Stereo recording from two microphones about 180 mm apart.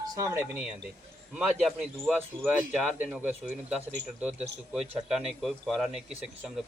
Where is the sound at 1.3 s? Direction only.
5° right (ahead or behind).